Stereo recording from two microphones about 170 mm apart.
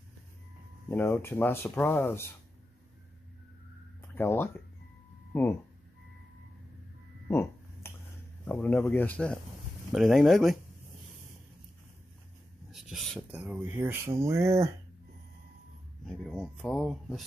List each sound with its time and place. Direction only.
0.8 s speech: 15° left (ahead or behind)
4.1 s speech: 15° left (ahead or behind)
7.2 s a sound: 15° left (ahead or behind)
8.5 s speech: 10° left (ahead or behind)
12.7 s speech: centre (ahead or behind); by 14.7 s 15° right (ahead or behind)
16.1 s speech: 5° left (ahead or behind)